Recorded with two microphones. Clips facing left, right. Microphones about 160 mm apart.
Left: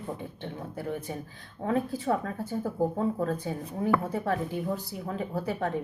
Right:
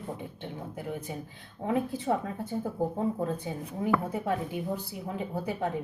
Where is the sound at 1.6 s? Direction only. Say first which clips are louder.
Left 1 dB; 20° right (ahead or behind).